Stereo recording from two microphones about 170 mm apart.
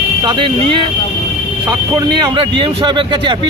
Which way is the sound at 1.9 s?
25° right (ahead or behind).